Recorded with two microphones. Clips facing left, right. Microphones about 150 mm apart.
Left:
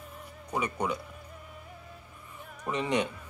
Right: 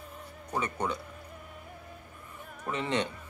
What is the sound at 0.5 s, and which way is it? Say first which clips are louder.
Speech: left 1 dB; 10° left (ahead or behind).